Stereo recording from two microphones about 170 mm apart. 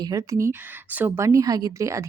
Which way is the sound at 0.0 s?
20° right (ahead or behind).